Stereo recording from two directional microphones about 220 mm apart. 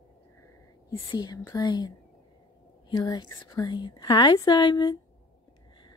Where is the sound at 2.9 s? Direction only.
20° left (ahead or behind).